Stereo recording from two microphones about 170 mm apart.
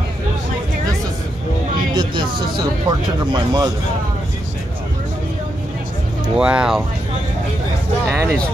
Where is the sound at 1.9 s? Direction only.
25° right (ahead or behind).